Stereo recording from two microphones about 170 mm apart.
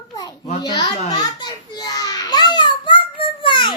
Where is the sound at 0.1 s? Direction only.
20° left (ahead or behind).